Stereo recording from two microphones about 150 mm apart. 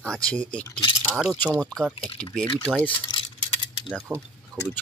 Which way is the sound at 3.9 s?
Centre (ahead or behind).